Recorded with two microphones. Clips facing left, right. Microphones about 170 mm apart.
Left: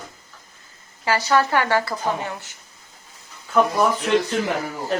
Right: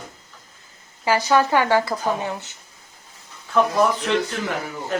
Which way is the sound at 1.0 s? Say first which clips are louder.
Right 1 dB; 15° right (ahead or behind).